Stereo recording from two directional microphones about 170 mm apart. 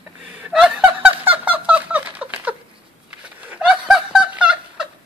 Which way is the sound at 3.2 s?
5° right (ahead or behind).